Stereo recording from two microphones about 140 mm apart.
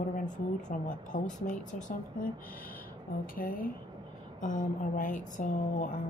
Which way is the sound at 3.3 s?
90° left.